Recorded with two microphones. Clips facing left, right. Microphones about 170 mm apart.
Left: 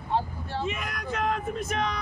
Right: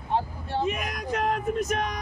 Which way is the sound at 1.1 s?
40° right (ahead or behind).